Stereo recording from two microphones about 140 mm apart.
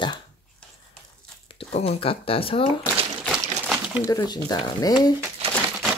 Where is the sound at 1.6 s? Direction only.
45° left (ahead or behind).